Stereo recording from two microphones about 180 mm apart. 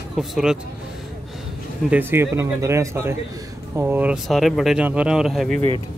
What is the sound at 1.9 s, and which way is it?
Speech, 15° right (ahead or behind).